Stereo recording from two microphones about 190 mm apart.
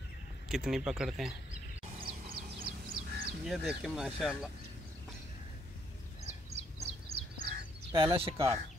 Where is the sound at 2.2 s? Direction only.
50° right (ahead or behind).